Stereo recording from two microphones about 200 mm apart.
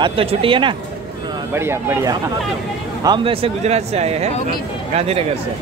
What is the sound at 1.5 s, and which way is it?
Speech, 10° right (ahead or behind).